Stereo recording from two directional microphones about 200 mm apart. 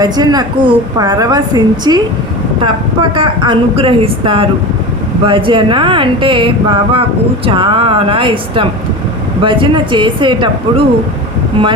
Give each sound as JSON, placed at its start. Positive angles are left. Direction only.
{"t": 0.0, "sound": "a woman's voice", "side_deg": -20}
{"t": 3.2, "sound": "a woman's voice", "side_deg": -25}